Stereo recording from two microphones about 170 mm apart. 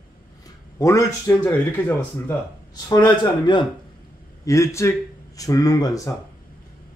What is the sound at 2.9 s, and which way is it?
Speech, 25° left (ahead or behind).